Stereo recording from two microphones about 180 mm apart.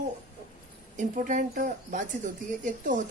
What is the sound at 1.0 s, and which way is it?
Speech, 45° right (ahead or behind).